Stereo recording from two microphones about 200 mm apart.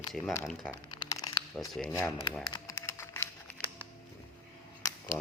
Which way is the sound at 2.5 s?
15° left (ahead or behind).